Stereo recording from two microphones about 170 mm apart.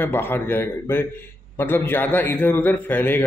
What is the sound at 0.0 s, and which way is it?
A man's voice, 10° left (ahead or behind).